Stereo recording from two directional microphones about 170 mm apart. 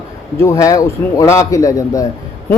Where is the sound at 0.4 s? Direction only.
20° left (ahead or behind).